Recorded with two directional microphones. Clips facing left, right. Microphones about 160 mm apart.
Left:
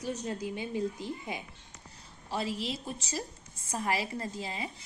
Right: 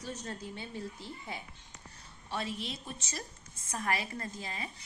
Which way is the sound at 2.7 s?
30° left (ahead or behind).